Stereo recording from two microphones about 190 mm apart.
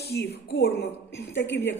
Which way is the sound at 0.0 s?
55° left (ahead or behind).